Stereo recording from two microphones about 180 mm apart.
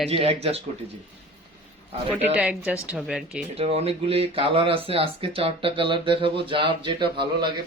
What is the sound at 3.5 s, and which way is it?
Speech, 35° right (ahead or behind).